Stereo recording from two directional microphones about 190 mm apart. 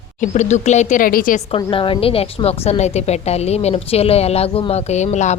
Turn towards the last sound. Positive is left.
turn(degrees=35)  # may be behind; listen again after turning